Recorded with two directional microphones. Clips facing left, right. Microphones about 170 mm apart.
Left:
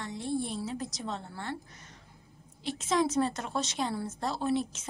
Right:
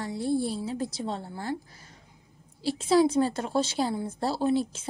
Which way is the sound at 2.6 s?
30° right (ahead or behind).